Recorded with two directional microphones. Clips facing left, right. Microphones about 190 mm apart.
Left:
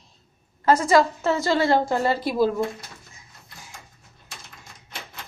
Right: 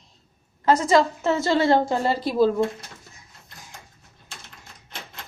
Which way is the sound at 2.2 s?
10° left (ahead or behind).